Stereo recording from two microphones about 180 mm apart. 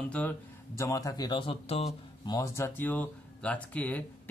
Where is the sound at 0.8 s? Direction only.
20° left (ahead or behind); by 2.4 s 35° left (ahead or behind).